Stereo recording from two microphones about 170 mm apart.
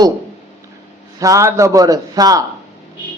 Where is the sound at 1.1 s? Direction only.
20° right (ahead or behind).